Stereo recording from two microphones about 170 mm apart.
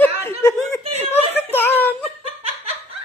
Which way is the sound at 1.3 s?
10° left (ahead or behind).